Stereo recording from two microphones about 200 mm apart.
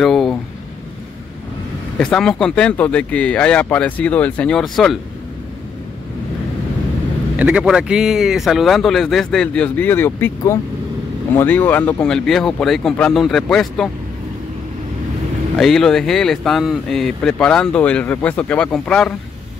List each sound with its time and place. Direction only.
0.0 s a sound: centre (ahead or behind)
2.0 s speech: 5° left (ahead or behind)
7.3 s speech: 5° right (ahead or behind)
15.5 s speech: centre (ahead or behind)